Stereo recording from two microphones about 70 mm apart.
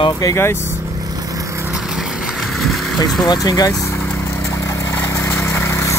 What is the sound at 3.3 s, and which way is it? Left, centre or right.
Speech, left.